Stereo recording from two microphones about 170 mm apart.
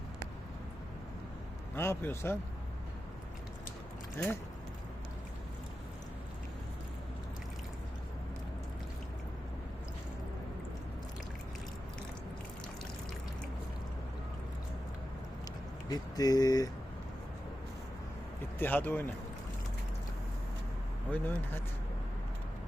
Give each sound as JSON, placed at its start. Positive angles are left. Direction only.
{"t": 1.7, "sound": "a man's voice", "side_deg": 15}
{"t": 15.9, "sound": "speech", "side_deg": 20}
{"t": 18.6, "sound": "a man's voice", "side_deg": 10}
{"t": 21.1, "sound": "a man's voice", "side_deg": 10}